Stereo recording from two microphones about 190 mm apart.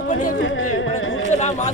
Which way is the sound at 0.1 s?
45° left (ahead or behind).